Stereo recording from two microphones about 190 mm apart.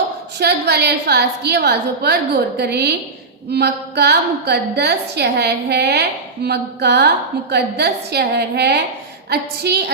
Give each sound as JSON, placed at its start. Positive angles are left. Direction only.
{"t": 0.3, "sound": "a woman's voice", "side_deg": -60}